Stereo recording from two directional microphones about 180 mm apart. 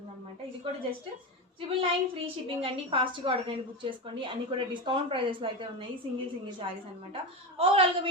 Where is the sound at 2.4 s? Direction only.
30° right (ahead or behind).